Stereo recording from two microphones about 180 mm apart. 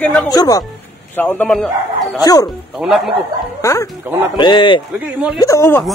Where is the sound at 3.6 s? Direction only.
15° left (ahead or behind).